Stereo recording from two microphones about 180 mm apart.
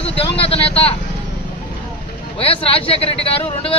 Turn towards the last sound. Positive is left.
turn(degrees=30)  # may be behind; listen again after turning